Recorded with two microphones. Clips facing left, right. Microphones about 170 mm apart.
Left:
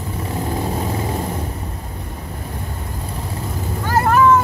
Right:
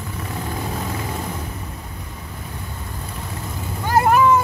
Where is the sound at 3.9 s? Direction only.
15° right (ahead or behind).